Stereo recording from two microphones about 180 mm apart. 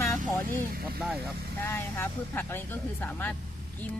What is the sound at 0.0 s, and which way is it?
Vehicle, 15° left (ahead or behind).